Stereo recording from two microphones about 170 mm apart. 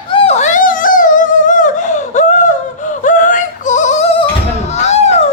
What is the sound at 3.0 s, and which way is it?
Yodeling, 50° left (ahead or behind).